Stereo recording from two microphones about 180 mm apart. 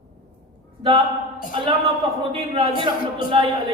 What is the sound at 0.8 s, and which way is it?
Speech, 30° right (ahead or behind).